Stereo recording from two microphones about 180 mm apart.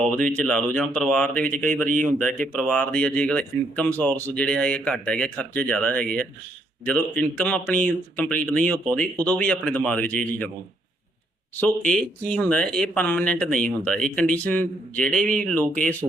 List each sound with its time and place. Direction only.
0.3 s speech: 5° left (ahead or behind)
1.5 s speech: 50° right (ahead or behind)
2.6 s speech: 5° left (ahead or behind)
11.5 s speech: 10° left (ahead or behind)